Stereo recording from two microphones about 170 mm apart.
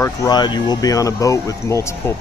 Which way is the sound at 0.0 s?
20° left (ahead or behind).